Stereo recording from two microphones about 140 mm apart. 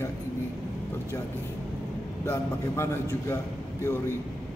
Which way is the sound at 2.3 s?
20° left (ahead or behind).